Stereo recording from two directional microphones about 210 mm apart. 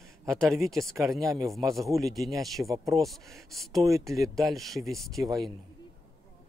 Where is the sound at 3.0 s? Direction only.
Centre (ahead or behind).